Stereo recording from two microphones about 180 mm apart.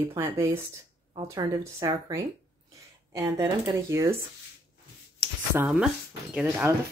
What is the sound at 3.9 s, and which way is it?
Speech, 15° right (ahead or behind).